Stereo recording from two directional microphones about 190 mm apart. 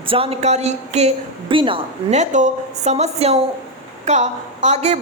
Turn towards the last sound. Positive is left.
turn(degrees=-35)  # may be behind; listen again after turning